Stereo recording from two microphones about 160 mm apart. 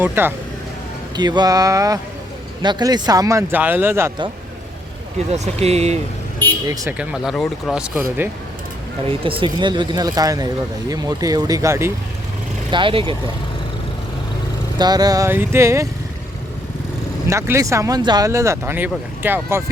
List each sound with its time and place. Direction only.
0.0 s speech: 15° right (ahead or behind)
1.1 s speech: 25° right (ahead or behind)
5.3 s speech: 40° right (ahead or behind)
6.7 s speech: 20° right (ahead or behind)
7.0 s speech: 5° right (ahead or behind)
9.0 s speech: 35° right (ahead or behind); by 11.9 s 15° right (ahead or behind)
12.7 s speech: 35° right (ahead or behind)
14.8 s speech: 25° right (ahead or behind)
17.2 s speech: 20° right (ahead or behind)